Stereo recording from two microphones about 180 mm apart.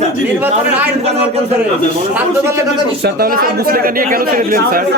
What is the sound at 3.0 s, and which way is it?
Speech, 60° right (ahead or behind).